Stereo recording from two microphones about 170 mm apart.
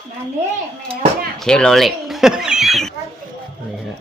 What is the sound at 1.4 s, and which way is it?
Speech, 5° left (ahead or behind).